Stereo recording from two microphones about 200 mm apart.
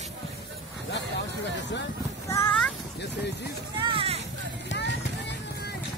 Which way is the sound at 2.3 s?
15° left (ahead or behind).